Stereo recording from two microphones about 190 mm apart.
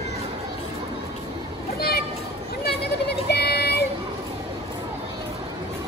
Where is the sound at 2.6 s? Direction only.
60° left (ahead or behind).